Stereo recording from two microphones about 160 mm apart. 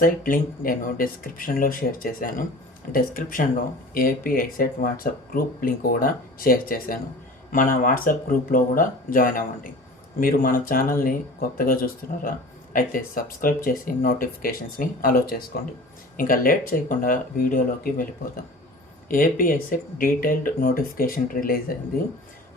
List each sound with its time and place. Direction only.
0.0 s speech: 60° left (ahead or behind)
19.0 s speech: 60° left (ahead or behind)